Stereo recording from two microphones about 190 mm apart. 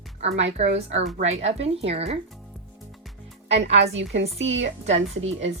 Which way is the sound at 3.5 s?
35° right (ahead or behind).